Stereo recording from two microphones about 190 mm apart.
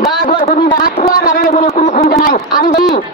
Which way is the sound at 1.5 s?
35° left (ahead or behind).